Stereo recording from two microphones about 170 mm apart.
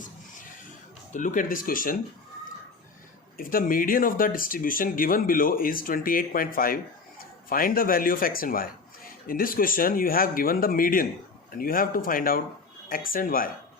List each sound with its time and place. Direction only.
1.1 s speech: 50° left (ahead or behind)
3.3 s speech: 55° left (ahead or behind)